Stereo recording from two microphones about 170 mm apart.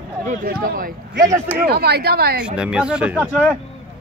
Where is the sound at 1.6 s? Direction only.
70° right (ahead or behind).